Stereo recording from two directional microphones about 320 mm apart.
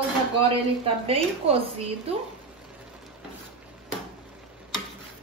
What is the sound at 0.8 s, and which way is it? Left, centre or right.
A woman's voice, centre.